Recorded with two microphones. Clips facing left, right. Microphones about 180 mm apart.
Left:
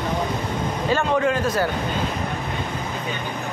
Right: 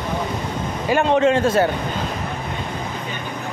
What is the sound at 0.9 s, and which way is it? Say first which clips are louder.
Speech: right 5 dB; 25° right (ahead or behind).